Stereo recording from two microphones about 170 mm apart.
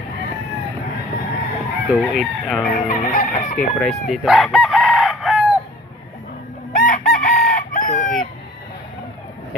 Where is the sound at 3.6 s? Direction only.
5° left (ahead or behind).